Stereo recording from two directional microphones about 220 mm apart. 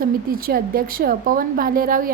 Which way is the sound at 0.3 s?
40° right (ahead or behind).